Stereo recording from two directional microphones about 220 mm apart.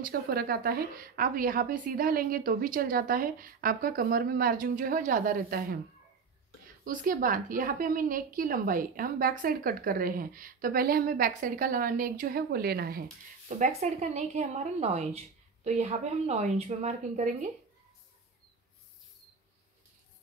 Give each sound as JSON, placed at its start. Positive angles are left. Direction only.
{"t": 0.0, "sound": "a woman's voice", "side_deg": -45}
{"t": 6.8, "sound": "a woman's voice", "side_deg": -40}
{"t": 13.5, "sound": "a woman's voice", "side_deg": -30}